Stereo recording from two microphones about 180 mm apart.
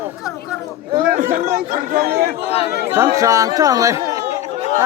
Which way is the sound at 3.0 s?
20° right (ahead or behind).